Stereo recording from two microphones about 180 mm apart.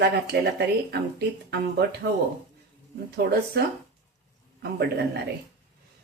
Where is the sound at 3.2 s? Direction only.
65° right (ahead or behind).